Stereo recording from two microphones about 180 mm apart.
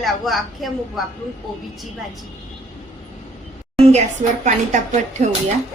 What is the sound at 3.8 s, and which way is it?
A woman's voice, 40° right (ahead or behind).